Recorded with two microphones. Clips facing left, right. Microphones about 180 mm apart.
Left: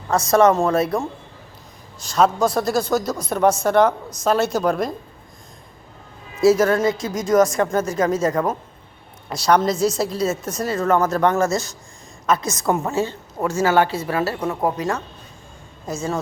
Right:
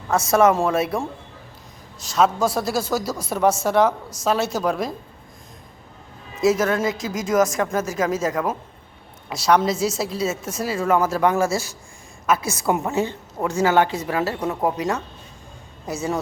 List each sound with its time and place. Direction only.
0.3 s a woman's voice: 5° right (ahead or behind)
6.4 s a woman's voice: centre (ahead or behind); by 15.0 s 20° right (ahead or behind)